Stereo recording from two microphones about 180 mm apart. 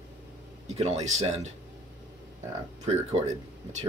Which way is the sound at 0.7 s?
35° right (ahead or behind).